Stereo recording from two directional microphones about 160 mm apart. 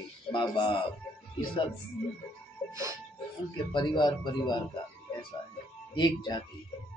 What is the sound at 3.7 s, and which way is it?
Speech, 30° left (ahead or behind).